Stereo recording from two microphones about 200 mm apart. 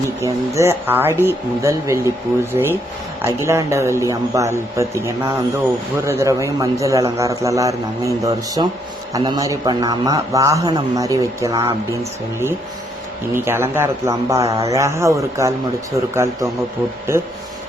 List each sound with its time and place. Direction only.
0.2 s a man's voice: 15° right (ahead or behind)
13.3 s a man's voice: 10° right (ahead or behind)